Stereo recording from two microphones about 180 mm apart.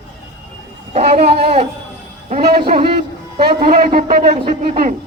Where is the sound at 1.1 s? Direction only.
35° right (ahead or behind).